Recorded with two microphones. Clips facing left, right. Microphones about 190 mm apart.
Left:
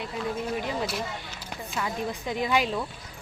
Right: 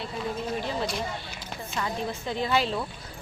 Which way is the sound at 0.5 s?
10° left (ahead or behind).